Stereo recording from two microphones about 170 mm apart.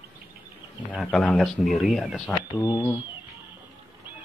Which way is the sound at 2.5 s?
25° left (ahead or behind).